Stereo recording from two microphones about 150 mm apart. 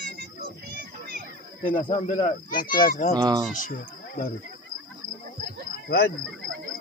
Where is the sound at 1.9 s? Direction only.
50° left (ahead or behind).